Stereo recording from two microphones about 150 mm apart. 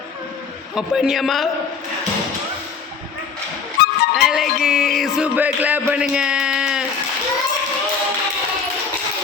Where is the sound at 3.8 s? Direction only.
90° left.